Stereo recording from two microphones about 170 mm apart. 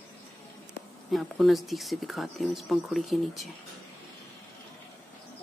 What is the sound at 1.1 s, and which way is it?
Speech, centre (ahead or behind).